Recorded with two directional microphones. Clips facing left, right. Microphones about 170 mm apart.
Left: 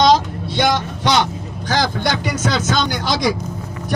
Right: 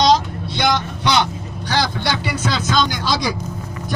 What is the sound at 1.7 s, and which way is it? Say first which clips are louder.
A man's voice: left 2 dB; 45° left (ahead or behind).